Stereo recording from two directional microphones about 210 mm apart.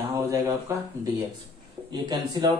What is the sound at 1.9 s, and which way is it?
Speech, 20° right (ahead or behind).